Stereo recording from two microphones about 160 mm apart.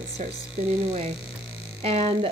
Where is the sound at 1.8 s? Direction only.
40° right (ahead or behind).